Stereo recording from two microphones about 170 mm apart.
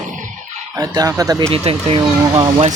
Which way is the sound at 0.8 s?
20° right (ahead or behind).